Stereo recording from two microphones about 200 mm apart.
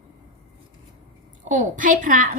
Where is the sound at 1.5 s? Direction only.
40° right (ahead or behind).